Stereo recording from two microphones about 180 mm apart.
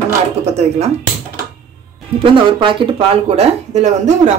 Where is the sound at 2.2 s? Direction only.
30° right (ahead or behind).